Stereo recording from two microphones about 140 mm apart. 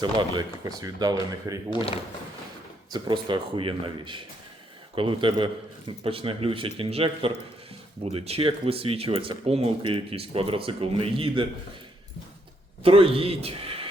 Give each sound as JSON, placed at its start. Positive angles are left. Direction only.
{"t": 0.0, "sound": "speech", "side_deg": -30}
{"t": 2.9, "sound": "a man's voice", "side_deg": -35}
{"t": 12.8, "sound": "a man's voice", "side_deg": -40}